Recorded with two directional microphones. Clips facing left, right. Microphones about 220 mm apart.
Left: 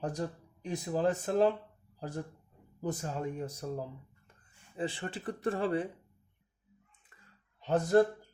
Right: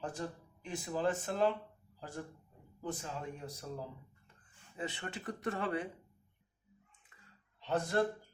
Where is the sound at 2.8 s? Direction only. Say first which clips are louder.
Left 6 dB; 45° left (ahead or behind).